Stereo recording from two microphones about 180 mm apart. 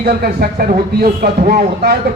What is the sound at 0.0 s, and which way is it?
A man's voice, 55° right (ahead or behind).